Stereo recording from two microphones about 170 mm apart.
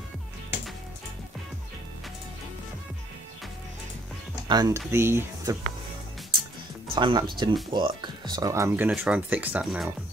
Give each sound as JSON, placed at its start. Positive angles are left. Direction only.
{"t": 4.5, "sound": "speech", "side_deg": -20}
{"t": 7.0, "sound": "speech", "side_deg": -25}